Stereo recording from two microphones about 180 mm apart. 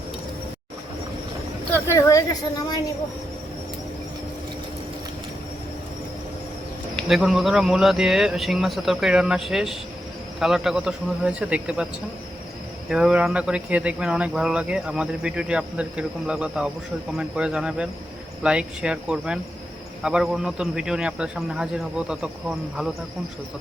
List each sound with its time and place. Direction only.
1.7 s a woman's voice: 15° left (ahead or behind)
7.1 s speech: centre (ahead or behind)
12.9 s speech: 5° right (ahead or behind)